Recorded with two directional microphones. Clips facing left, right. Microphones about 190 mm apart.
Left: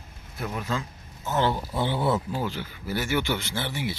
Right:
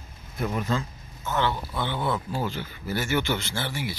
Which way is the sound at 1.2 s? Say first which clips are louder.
Left 2 dB; 40° left (ahead or behind).